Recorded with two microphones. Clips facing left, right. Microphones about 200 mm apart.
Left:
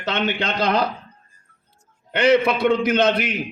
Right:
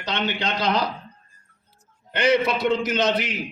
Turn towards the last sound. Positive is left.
turn(degrees=55)  # may be behind; listen again after turning